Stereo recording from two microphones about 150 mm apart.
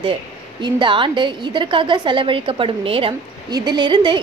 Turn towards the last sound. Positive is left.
turn(degrees=-30)  # may be behind; listen again after turning